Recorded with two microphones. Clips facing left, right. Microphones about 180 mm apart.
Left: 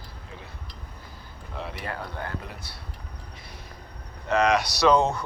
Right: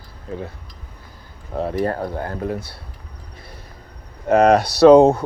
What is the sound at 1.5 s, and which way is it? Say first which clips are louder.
Speech: right 13 dB; 50° right (ahead or behind).